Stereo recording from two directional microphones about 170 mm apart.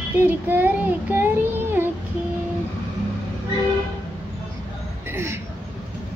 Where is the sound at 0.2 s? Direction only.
10° right (ahead or behind).